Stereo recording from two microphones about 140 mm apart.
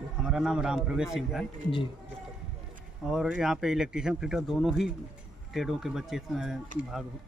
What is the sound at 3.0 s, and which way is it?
Speech, 5° right (ahead or behind).